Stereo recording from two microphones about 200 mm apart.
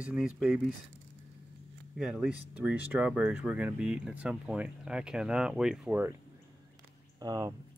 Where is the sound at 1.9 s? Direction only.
5° right (ahead or behind).